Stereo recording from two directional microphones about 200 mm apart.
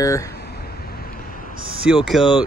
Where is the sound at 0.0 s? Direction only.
15° left (ahead or behind).